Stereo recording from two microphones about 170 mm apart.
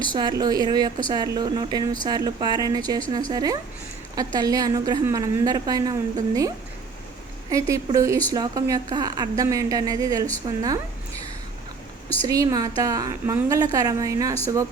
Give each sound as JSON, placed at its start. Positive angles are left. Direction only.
{"t": 0.1, "sound": "a woman's voice", "side_deg": -25}
{"t": 7.9, "sound": "a woman's voice", "side_deg": -20}
{"t": 12.3, "sound": "a woman's voice", "side_deg": -20}